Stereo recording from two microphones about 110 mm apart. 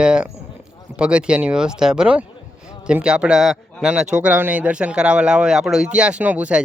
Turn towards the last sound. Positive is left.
turn(degrees=-10)  # may be behind; listen again after turning